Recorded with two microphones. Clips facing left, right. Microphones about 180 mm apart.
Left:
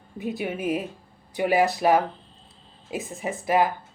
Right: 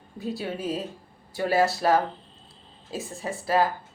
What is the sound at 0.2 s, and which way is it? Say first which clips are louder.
Speech: left 2 dB; 20° left (ahead or behind).